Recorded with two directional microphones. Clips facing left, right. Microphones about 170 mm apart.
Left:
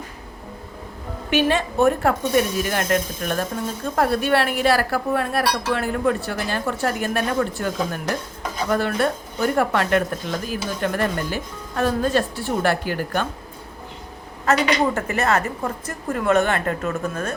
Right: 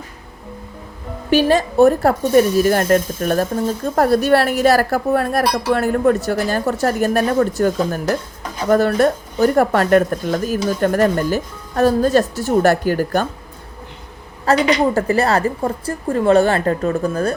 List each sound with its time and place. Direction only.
1.3 s speech: 35° right (ahead or behind)
14.4 s speech: 35° right (ahead or behind)